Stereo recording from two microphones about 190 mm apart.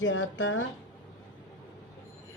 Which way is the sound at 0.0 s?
90° left.